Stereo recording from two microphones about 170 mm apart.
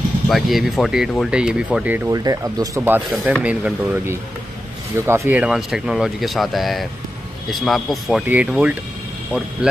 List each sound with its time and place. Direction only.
0.3 s speech: centre (ahead or behind)
2.0 s speech: 20° right (ahead or behind)
3.1 s speech: 5° right (ahead or behind)